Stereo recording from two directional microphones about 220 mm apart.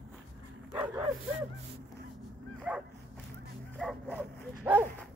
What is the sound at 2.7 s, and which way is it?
Dog, 5° right (ahead or behind).